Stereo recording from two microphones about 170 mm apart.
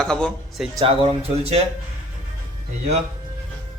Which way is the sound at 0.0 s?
5° left (ahead or behind).